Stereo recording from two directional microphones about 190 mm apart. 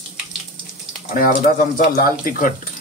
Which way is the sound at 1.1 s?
45° left (ahead or behind).